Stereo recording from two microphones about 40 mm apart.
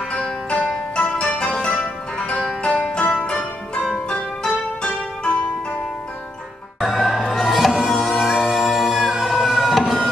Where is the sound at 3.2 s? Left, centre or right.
Left.